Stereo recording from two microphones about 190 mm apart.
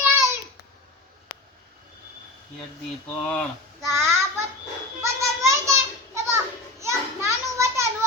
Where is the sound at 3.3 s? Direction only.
5° left (ahead or behind).